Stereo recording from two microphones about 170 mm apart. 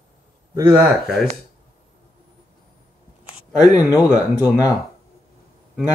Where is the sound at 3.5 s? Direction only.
20° left (ahead or behind).